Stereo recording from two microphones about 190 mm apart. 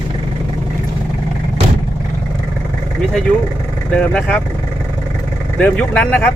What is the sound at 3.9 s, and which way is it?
Speech, 5° left (ahead or behind).